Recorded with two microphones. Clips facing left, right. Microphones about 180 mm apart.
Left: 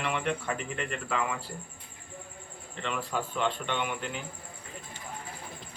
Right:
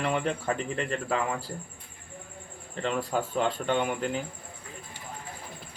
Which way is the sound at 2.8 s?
35° right (ahead or behind).